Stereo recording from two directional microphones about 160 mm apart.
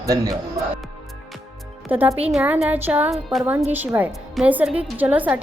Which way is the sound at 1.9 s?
10° right (ahead or behind).